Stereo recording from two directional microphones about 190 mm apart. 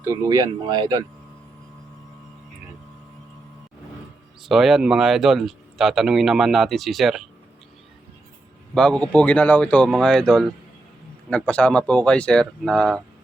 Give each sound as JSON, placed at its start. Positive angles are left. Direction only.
{"t": 0.0, "sound": "speech", "side_deg": -15}
{"t": 4.4, "sound": "speech", "side_deg": 0}
{"t": 8.7, "sound": "speech", "side_deg": 5}